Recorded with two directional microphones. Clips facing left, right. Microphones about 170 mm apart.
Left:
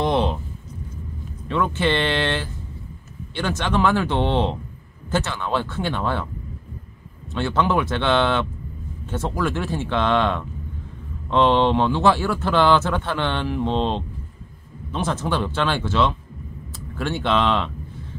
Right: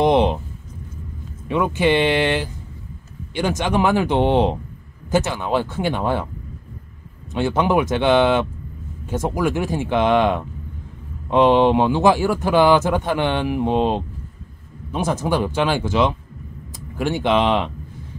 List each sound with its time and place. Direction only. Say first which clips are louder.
0.0 s a sound: right 5 dB; 15° right (ahead or behind)
1.5 s speech: right 4 dB; 15° right (ahead or behind)
7.3 s speech: right 3 dB; 15° right (ahead or behind)